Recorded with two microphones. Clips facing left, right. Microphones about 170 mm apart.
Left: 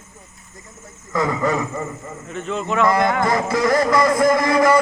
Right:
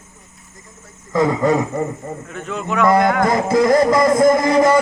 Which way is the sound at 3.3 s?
20° right (ahead or behind).